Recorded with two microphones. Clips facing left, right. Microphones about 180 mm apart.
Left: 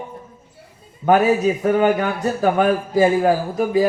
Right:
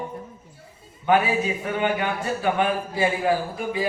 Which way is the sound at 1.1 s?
40° left (ahead or behind).